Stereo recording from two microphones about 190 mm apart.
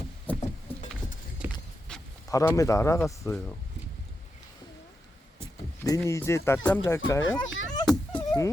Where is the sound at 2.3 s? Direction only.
15° left (ahead or behind).